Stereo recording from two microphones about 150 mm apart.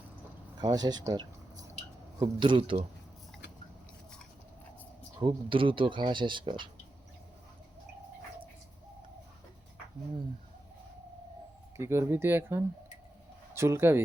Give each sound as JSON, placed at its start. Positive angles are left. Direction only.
{"t": 0.6, "sound": "speech", "side_deg": -25}
{"t": 5.2, "sound": "speech", "side_deg": -35}
{"t": 11.8, "sound": "speech", "side_deg": -15}